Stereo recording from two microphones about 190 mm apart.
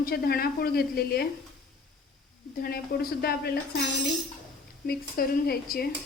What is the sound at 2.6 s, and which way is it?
A woman's voice, 55° left (ahead or behind).